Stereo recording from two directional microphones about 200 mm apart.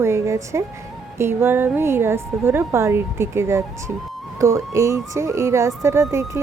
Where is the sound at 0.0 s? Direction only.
15° right (ahead or behind).